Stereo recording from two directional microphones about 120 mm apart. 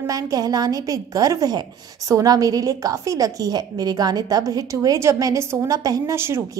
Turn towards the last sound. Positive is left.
turn(degrees=-20)  # may be behind; listen again after turning